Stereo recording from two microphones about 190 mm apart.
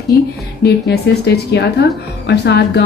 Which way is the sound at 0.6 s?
60° left (ahead or behind).